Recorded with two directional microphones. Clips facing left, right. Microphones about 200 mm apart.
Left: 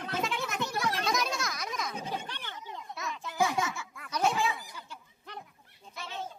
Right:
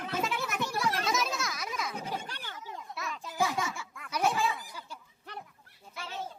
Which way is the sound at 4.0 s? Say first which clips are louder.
Even; 10° right (ahead or behind).